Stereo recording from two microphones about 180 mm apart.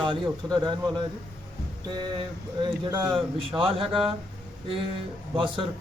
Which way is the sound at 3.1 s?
30° right (ahead or behind).